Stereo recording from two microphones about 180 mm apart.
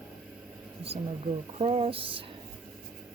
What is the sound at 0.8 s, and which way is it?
A woman's voice, 30° right (ahead or behind).